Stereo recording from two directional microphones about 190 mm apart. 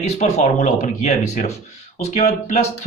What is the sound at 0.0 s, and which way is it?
Speech, 35° left (ahead or behind).